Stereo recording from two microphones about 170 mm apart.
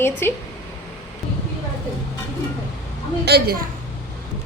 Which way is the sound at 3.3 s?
75° right (ahead or behind).